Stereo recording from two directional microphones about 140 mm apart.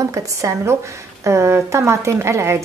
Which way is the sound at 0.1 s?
20° right (ahead or behind).